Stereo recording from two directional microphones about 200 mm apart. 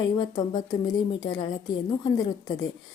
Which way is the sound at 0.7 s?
20° left (ahead or behind).